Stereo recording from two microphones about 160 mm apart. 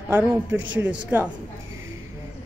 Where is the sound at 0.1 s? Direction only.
15° right (ahead or behind).